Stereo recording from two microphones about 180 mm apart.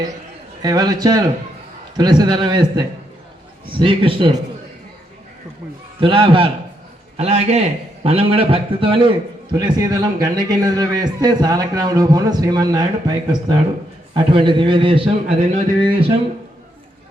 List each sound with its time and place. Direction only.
0.6 s a man's voice: 20° right (ahead or behind)
6.0 s a man's voice: 30° right (ahead or behind)